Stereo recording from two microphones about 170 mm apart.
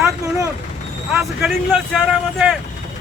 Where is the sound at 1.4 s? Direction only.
Centre (ahead or behind).